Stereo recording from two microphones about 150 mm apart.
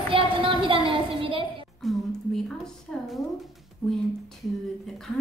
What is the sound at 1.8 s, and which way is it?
A woman's voice, centre (ahead or behind).